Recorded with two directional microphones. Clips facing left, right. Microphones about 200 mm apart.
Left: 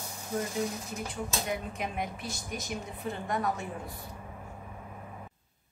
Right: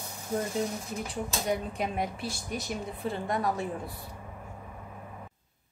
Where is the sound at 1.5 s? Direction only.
35° right (ahead or behind).